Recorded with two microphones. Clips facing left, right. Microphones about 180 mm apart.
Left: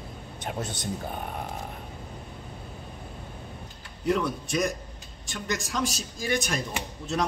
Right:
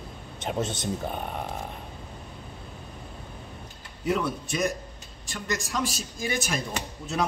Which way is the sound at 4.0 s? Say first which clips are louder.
Left 1 dB; 5° right (ahead or behind).